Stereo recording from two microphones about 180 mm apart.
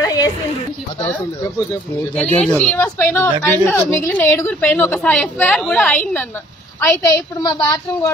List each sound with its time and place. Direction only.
0.0 s a sound: 20° left (ahead or behind)
2.1 s speech: 5° left (ahead or behind)
6.8 s speech: 15° left (ahead or behind)